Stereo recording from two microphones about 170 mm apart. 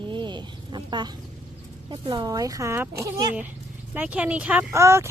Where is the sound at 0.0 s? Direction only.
30° right (ahead or behind).